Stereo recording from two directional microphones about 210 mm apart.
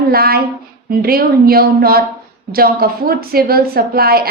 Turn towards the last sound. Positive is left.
turn(degrees=-45)  # may be behind; listen again after turning